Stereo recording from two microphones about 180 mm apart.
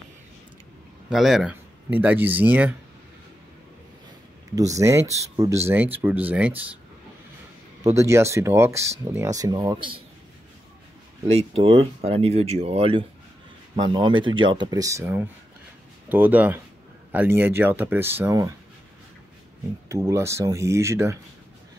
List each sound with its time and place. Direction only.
1.1 s speech: centre (ahead or behind)
4.6 s speech: 15° right (ahead or behind)
7.8 s speech: 15° right (ahead or behind)
11.3 s speech: 30° right (ahead or behind); by 18.5 s 15° right (ahead or behind)
19.9 s speech: 15° right (ahead or behind)